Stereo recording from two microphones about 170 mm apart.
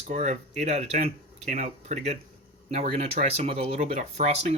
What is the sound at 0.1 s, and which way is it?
Speech, 40° right (ahead or behind).